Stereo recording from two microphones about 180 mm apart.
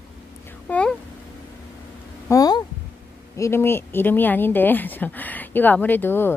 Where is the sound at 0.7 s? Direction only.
5° left (ahead or behind).